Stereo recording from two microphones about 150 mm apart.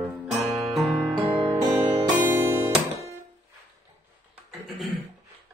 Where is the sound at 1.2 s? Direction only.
25° right (ahead or behind).